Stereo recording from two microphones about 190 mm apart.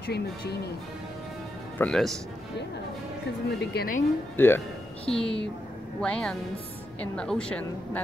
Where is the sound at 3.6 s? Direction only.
60° left (ahead or behind).